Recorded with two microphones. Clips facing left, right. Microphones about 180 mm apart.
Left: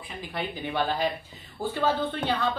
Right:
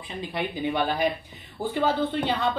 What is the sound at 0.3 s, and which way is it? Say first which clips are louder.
Speech: right 4 dB; 20° right (ahead or behind).